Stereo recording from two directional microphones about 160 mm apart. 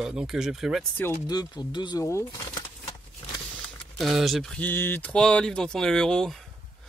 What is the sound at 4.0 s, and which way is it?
Speech, centre (ahead or behind).